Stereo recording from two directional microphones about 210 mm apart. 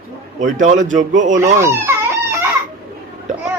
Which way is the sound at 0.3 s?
35° right (ahead or behind).